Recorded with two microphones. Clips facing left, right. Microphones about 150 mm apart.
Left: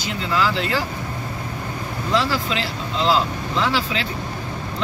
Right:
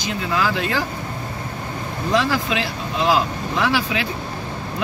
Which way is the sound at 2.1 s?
15° right (ahead or behind).